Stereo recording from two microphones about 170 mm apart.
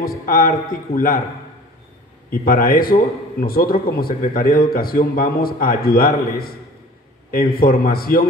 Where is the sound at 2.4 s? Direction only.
55° left (ahead or behind).